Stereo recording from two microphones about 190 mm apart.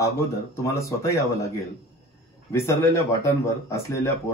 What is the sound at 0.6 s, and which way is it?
Speech, 15° left (ahead or behind).